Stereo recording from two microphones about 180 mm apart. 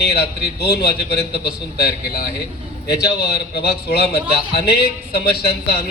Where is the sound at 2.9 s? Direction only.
65° left (ahead or behind).